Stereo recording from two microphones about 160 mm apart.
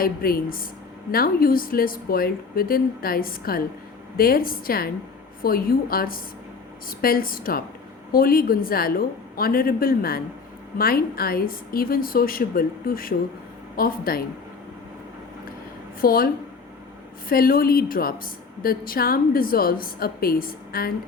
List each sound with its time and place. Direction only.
0.0 s a woman's voice: 65° left (ahead or behind)
16.0 s a woman's voice: 65° left (ahead or behind)